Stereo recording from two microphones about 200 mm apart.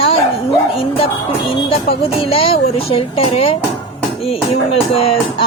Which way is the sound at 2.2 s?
30° left (ahead or behind).